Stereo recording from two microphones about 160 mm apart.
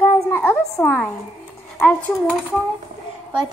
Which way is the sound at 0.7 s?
5° left (ahead or behind).